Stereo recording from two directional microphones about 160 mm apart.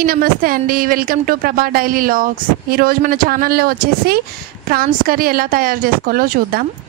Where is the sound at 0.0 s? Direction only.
65° right (ahead or behind).